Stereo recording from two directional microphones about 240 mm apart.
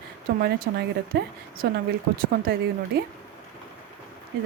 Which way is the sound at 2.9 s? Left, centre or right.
Right.